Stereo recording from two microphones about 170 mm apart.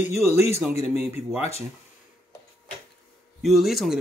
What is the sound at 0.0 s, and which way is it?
Speech, 40° left (ahead or behind).